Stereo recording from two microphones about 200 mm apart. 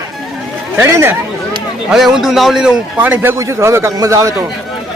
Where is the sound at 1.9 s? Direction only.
Centre (ahead or behind).